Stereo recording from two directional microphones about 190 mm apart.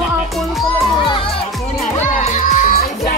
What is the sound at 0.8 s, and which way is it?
Speech, 25° left (ahead or behind).